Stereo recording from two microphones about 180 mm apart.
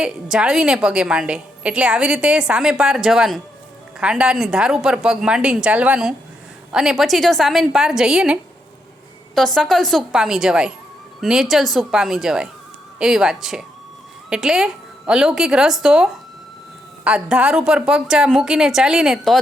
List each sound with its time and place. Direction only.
0.0 s a woman's voice: 5° right (ahead or behind)